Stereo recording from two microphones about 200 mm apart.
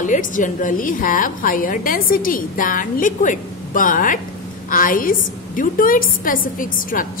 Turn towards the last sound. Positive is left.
turn(degrees=45)  # may be behind; listen again after turning